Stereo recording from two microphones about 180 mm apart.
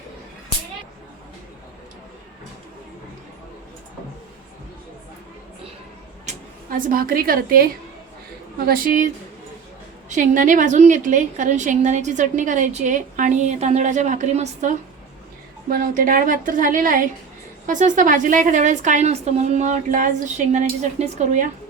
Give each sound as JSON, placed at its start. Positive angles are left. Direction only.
{"t": 6.2, "sound": "a woman's voice", "side_deg": -50}
{"t": 10.1, "sound": "a woman's voice", "side_deg": -45}